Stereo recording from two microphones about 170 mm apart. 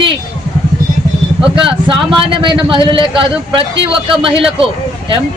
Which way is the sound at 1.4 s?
30° right (ahead or behind).